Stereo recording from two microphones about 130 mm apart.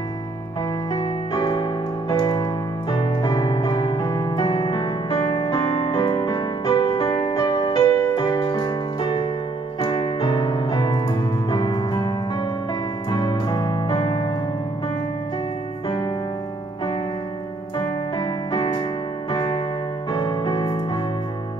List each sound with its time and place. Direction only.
1.0 s keyboard: 35° left (ahead or behind)
9.8 s piano: 40° left (ahead or behind)
13.1 s music: 35° left (ahead or behind)
17.7 s music: 35° left (ahead or behind)